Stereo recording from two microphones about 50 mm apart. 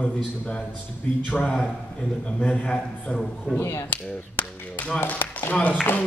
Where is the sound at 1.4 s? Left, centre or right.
Left.